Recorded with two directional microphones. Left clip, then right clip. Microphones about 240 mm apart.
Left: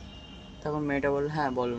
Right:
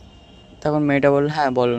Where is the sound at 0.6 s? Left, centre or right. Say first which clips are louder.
Right 12 dB; right.